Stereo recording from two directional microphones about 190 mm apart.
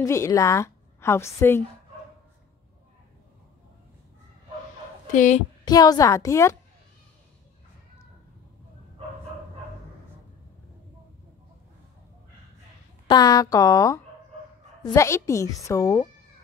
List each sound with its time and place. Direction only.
0.0 s a woman's voice: 15° left (ahead or behind)
5.1 s a sound: 40° left (ahead or behind)
5.7 s a woman's voice: 20° left (ahead or behind)
13.1 s a woman's voice: 20° left (ahead or behind)